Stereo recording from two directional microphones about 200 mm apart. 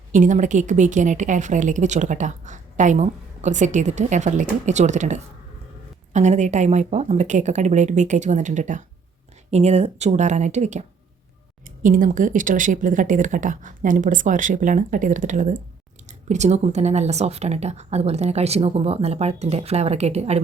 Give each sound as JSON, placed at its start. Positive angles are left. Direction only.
{"t": 0.1, "sound": "a woman's voice", "side_deg": -40}